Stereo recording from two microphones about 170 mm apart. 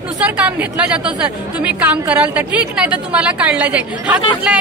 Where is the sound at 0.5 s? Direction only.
10° right (ahead or behind).